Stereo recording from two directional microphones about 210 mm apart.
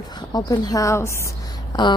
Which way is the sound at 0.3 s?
15° left (ahead or behind).